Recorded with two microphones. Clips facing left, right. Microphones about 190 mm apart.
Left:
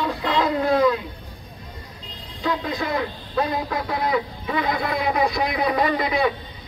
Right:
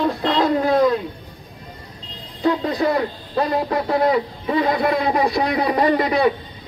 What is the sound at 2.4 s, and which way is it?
A man's voice, 35° right (ahead or behind).